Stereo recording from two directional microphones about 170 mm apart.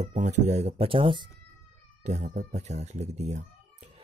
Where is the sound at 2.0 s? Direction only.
45° right (ahead or behind).